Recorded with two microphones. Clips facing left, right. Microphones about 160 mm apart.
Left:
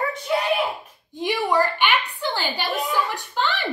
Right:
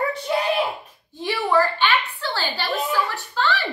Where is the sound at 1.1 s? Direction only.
15° left (ahead or behind).